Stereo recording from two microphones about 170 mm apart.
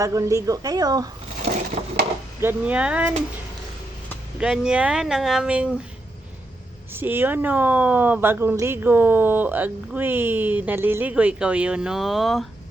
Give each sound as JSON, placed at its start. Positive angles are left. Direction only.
{"t": 0.0, "sound": "a woman's voice", "side_deg": -20}
{"t": 2.4, "sound": "speech", "side_deg": -10}
{"t": 4.4, "sound": "speech", "side_deg": -5}
{"t": 6.9, "sound": "speech", "side_deg": -15}